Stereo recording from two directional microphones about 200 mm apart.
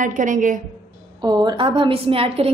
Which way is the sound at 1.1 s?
20° right (ahead or behind).